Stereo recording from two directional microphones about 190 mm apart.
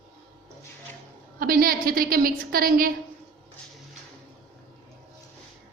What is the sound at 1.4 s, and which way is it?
A woman's voice, 50° right (ahead or behind).